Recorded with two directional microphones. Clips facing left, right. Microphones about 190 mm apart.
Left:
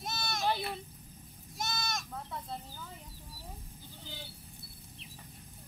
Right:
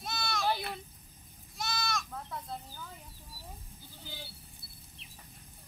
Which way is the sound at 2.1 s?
Centre (ahead or behind).